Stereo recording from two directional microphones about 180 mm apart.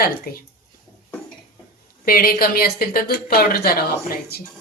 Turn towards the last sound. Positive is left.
turn(degrees=55)  # may be behind; listen again after turning